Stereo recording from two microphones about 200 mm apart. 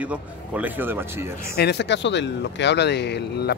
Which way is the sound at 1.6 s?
60° left (ahead or behind).